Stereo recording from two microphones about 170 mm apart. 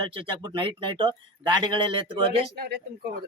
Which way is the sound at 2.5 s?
65° right (ahead or behind).